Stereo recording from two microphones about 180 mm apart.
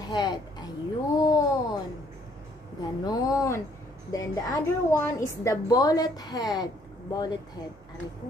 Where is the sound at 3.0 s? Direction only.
20° left (ahead or behind).